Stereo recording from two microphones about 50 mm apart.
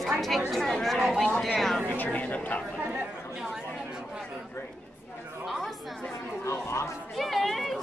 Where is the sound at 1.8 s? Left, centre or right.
Left.